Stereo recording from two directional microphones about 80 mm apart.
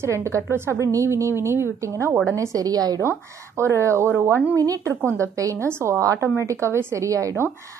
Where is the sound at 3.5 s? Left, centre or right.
Right.